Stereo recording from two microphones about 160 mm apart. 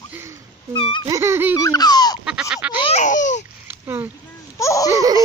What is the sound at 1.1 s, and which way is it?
Speech, 15° right (ahead or behind).